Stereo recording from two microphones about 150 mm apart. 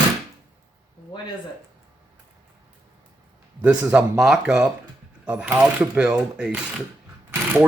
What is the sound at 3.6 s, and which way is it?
Speech, 10° right (ahead or behind).